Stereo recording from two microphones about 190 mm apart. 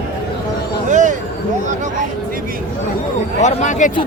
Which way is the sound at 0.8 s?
40° right (ahead or behind).